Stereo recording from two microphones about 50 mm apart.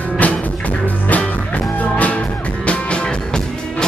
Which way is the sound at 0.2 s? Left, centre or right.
Left.